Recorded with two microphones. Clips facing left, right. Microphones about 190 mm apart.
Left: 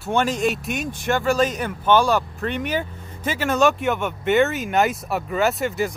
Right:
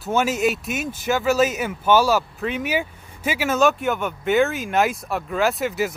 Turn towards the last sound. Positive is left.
turn(degrees=0)  # may be behind; listen again after turning